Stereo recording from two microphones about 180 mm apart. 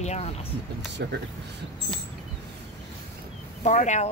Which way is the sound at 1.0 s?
65° right (ahead or behind).